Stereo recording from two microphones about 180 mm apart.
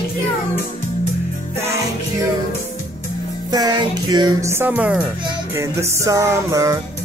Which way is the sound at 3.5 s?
20° right (ahead or behind).